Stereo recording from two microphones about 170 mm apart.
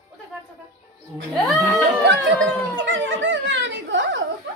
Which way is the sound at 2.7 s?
90° right.